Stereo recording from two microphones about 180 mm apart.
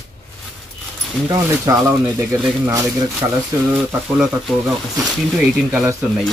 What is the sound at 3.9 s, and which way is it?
Speech, 5° right (ahead or behind).